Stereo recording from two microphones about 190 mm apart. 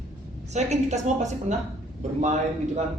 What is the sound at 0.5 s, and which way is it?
Speech, 35° right (ahead or behind).